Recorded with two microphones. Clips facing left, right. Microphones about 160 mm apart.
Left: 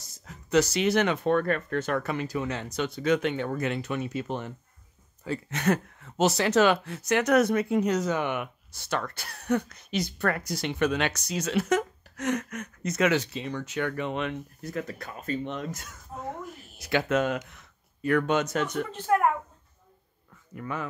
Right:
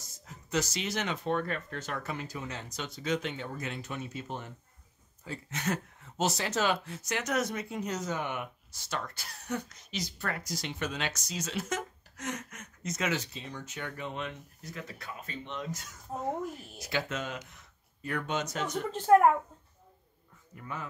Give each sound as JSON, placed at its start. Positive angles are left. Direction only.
{"t": 0.2, "sound": "speech", "side_deg": 70}
{"t": 20.5, "sound": "speech", "side_deg": 75}